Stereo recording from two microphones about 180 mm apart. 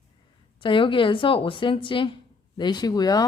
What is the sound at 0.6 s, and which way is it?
Speech, 25° left (ahead or behind).